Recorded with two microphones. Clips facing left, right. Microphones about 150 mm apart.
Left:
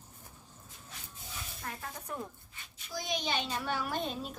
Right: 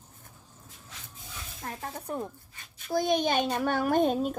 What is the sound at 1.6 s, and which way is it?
Music, 35° right (ahead or behind).